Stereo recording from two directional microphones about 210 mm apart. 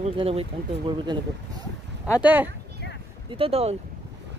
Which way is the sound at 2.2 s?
10° right (ahead or behind).